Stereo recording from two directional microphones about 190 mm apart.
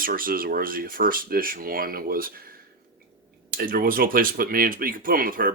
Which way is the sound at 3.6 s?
50° right (ahead or behind).